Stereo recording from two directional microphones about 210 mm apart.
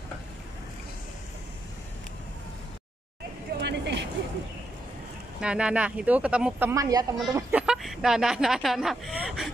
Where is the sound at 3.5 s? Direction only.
55° right (ahead or behind).